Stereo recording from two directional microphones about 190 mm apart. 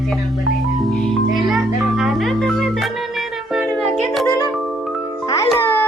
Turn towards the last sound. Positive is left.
turn(degrees=10)  # may be behind; listen again after turning